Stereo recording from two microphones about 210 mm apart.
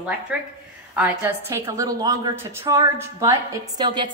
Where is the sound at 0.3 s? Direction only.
5° right (ahead or behind).